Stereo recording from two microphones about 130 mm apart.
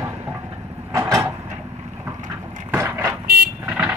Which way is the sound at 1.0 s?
25° right (ahead or behind).